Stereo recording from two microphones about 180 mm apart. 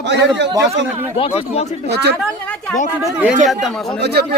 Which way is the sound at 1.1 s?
30° left (ahead or behind).